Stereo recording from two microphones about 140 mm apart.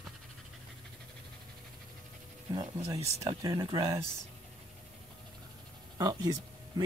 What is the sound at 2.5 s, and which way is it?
Speech, 25° right (ahead or behind).